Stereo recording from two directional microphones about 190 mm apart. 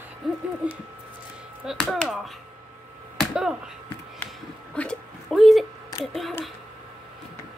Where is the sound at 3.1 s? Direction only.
Centre (ahead or behind).